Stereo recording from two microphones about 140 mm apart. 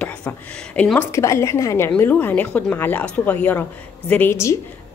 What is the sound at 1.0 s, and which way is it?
A woman's voice, 20° left (ahead or behind).